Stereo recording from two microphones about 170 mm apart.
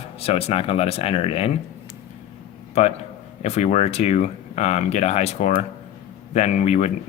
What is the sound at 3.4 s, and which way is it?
Speech, 40° left (ahead or behind).